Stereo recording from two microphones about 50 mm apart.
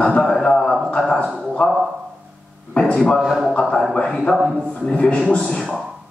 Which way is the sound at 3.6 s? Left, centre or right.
Centre.